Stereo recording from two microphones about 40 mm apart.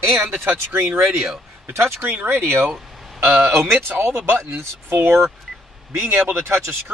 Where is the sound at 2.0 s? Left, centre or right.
Right.